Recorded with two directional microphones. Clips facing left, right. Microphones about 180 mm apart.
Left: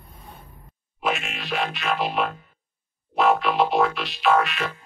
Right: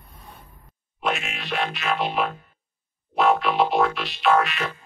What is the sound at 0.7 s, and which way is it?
Music, centre (ahead or behind).